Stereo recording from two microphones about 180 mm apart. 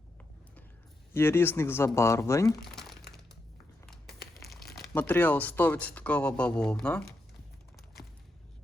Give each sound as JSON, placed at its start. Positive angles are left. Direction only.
{"t": 1.1, "sound": "speech", "side_deg": 15}
{"t": 2.5, "sound": "crumpling", "side_deg": 0}
{"t": 4.4, "sound": "crumpling", "side_deg": 0}
{"t": 4.9, "sound": "speech", "side_deg": 10}